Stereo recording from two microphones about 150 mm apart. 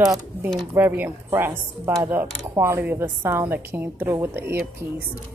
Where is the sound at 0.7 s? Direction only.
10° right (ahead or behind).